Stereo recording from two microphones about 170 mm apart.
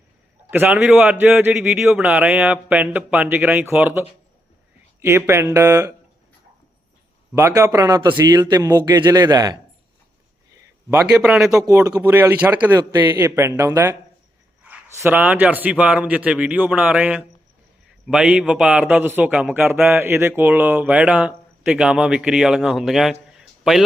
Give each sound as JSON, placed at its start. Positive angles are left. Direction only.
{"t": 0.5, "sound": "a man's voice", "side_deg": -10}
{"t": 7.3, "sound": "speech", "side_deg": -15}
{"t": 11.1, "sound": "speech", "side_deg": -5}
{"t": 11.6, "sound": "a man's voice", "side_deg": -20}
{"t": 23.3, "sound": "a sound", "side_deg": 0}